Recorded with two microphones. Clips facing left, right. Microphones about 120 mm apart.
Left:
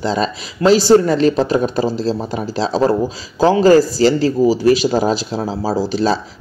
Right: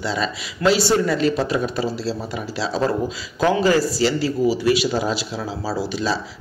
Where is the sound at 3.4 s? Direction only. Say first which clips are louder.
Left 7 dB; 35° left (ahead or behind).